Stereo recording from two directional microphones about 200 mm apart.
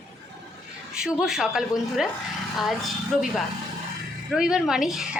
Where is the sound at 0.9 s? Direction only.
5° right (ahead or behind).